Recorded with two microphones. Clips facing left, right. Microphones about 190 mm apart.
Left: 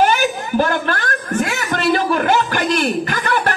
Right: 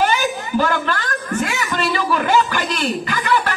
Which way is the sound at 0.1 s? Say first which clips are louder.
Left 2 dB; 55° left (ahead or behind).